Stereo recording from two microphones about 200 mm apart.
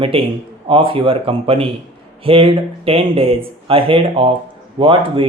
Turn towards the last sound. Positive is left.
turn(degrees=-25)  # may be behind; listen again after turning